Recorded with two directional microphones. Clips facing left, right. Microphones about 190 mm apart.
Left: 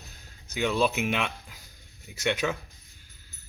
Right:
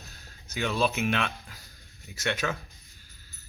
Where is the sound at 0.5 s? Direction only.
15° left (ahead or behind).